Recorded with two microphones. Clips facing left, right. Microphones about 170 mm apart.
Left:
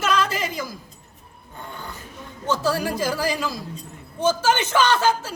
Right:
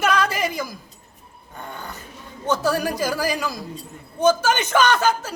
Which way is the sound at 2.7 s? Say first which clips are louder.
Right 1 dB; 15° right (ahead or behind).